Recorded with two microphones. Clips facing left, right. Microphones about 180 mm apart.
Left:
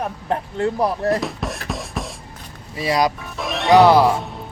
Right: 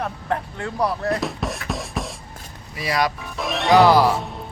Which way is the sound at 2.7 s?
30° left (ahead or behind).